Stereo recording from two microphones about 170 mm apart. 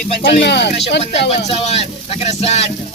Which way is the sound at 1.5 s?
35° left (ahead or behind).